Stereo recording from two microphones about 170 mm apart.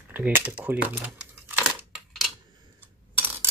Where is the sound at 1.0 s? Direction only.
10° right (ahead or behind).